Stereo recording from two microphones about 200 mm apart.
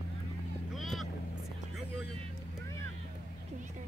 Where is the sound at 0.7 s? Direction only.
Centre (ahead or behind).